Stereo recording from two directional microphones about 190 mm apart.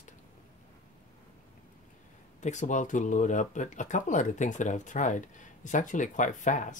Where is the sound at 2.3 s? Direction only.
40° left (ahead or behind).